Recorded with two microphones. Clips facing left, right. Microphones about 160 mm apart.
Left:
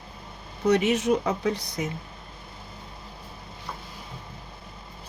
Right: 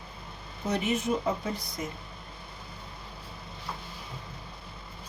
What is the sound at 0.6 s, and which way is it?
Speech, 80° left.